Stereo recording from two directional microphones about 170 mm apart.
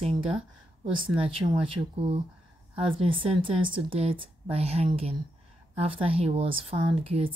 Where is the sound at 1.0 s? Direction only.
30° right (ahead or behind).